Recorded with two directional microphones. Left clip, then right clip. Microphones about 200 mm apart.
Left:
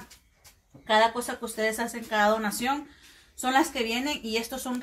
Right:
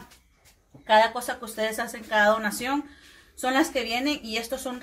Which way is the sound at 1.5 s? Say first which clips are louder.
Left 1 dB; 25° right (ahead or behind).